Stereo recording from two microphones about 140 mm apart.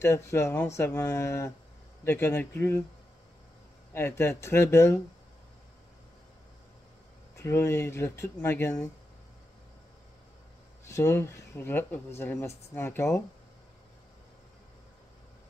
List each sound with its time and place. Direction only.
0.0 s speech: 20° left (ahead or behind)
3.9 s speech: 15° left (ahead or behind)
7.3 s speech: 20° left (ahead or behind)
10.9 s speech: 20° left (ahead or behind)